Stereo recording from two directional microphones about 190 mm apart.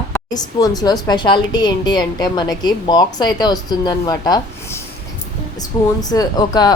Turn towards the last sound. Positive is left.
turn(degrees=20)  # may be behind; listen again after turning